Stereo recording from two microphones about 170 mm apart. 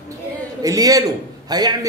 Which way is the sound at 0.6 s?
20° right (ahead or behind).